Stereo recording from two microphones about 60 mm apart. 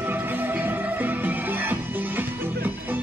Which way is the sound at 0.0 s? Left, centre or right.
Right.